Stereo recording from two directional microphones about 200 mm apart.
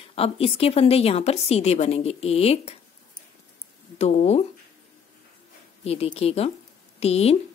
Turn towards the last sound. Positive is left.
turn(degrees=30)  # may be behind; listen again after turning